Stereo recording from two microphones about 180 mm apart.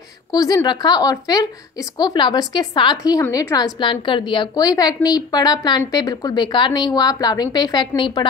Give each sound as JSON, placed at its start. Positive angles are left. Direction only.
{"t": 0.3, "sound": "a woman's voice", "side_deg": 20}